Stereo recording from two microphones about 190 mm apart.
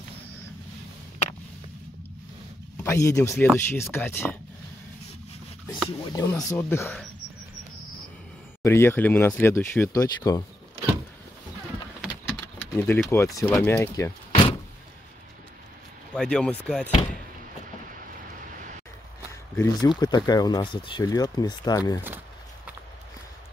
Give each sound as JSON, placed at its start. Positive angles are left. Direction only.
{"t": 2.8, "sound": "speech", "side_deg": 15}
{"t": 5.7, "sound": "speech", "side_deg": 25}
{"t": 8.6, "sound": "speech", "side_deg": 10}
{"t": 12.7, "sound": "speech", "side_deg": 10}
{"t": 14.3, "sound": "door", "side_deg": 30}
{"t": 16.2, "sound": "speech", "side_deg": 5}
{"t": 19.5, "sound": "speech", "side_deg": 10}